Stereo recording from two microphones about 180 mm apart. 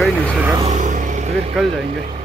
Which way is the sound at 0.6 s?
45° right (ahead or behind).